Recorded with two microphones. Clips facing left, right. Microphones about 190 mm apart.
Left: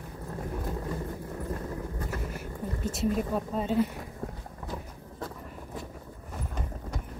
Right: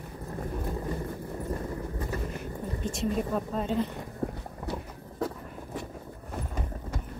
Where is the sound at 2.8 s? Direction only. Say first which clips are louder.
Left 1 dB; 5° left (ahead or behind).